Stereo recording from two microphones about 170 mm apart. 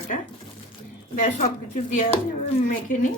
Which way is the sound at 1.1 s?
50° left (ahead or behind).